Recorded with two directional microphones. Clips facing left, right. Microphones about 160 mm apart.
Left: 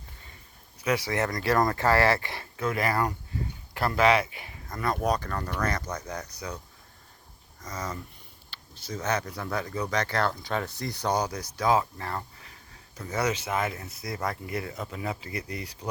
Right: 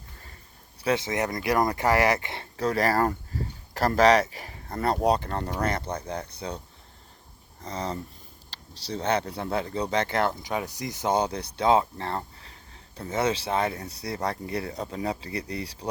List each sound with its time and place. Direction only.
0.8 s speech: 30° right (ahead or behind)
2.6 s speech: 35° right (ahead or behind)
7.6 s speech: 30° right (ahead or behind)